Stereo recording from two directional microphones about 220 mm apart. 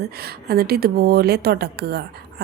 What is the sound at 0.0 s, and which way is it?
A woman's voice, 45° right (ahead or behind).